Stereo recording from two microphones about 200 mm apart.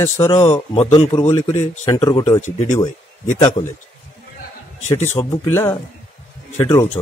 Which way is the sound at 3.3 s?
30° left (ahead or behind).